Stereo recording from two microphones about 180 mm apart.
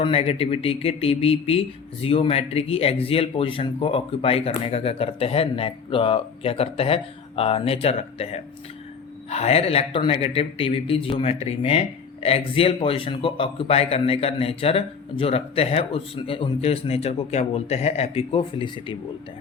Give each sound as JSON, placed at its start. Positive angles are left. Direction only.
{"t": 0.0, "sound": "speech", "side_deg": 35}